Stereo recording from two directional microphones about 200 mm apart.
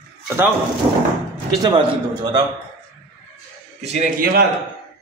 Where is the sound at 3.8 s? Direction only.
35° right (ahead or behind).